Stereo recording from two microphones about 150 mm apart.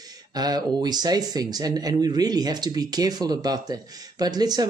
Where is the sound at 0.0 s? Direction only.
25° right (ahead or behind).